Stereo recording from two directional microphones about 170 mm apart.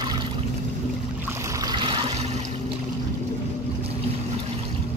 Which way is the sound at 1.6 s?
25° right (ahead or behind).